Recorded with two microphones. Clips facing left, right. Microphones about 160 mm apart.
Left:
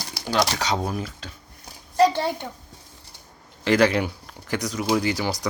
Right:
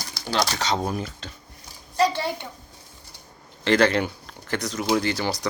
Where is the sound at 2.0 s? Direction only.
50° left (ahead or behind).